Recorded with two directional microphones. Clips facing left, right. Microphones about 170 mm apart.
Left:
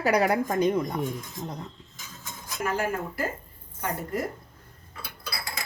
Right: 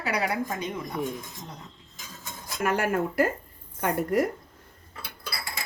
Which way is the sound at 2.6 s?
65° right (ahead or behind).